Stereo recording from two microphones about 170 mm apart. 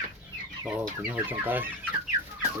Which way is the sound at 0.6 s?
10° right (ahead or behind).